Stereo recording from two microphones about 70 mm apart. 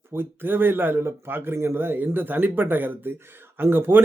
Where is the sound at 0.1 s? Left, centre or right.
Right.